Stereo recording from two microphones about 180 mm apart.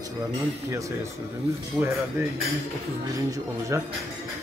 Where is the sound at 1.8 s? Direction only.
5° right (ahead or behind).